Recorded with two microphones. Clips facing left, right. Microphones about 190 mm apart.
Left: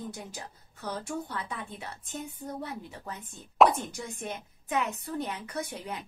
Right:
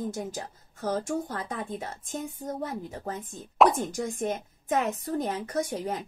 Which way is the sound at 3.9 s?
45° right (ahead or behind).